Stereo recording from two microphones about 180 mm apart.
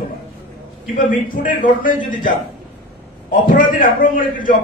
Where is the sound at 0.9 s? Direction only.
50° left (ahead or behind).